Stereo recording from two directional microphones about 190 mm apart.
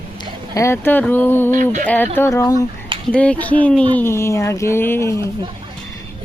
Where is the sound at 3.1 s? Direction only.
5° left (ahead or behind).